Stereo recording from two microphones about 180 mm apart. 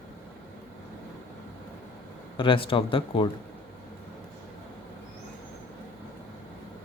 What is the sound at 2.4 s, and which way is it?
Speech, 30° left (ahead or behind).